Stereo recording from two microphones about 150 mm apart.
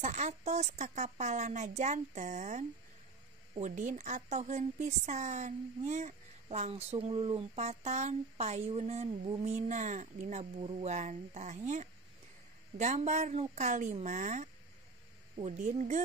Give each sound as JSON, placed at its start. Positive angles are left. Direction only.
{"t": 0.0, "sound": "a woman's voice", "side_deg": -50}
{"t": 3.6, "sound": "a woman's voice", "side_deg": -55}